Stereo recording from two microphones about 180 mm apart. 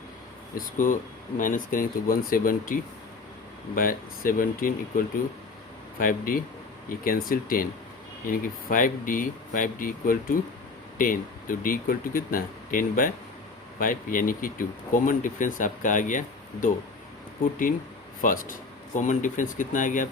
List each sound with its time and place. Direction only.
0.5 s speech: 45° left (ahead or behind)
18.2 s speech: 50° left (ahead or behind)